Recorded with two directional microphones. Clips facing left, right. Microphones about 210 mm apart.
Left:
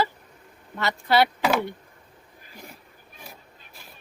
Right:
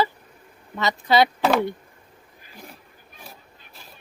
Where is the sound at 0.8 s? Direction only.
15° right (ahead or behind).